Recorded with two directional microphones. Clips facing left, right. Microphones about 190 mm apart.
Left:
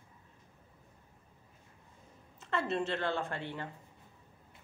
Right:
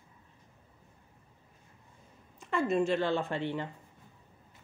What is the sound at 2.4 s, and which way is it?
A woman's voice, 10° right (ahead or behind).